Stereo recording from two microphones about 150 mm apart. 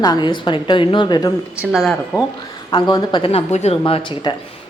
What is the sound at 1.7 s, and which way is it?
Speech, centre (ahead or behind).